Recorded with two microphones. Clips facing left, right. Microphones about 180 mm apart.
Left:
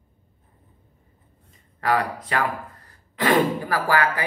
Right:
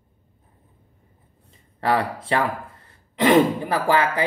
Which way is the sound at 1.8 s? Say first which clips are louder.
Right 1 dB; 30° right (ahead or behind).